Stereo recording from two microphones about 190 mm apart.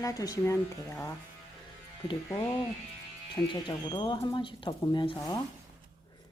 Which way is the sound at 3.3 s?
25° left (ahead or behind).